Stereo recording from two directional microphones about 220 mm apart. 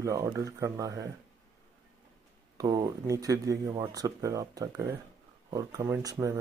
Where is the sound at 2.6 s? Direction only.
15° right (ahead or behind).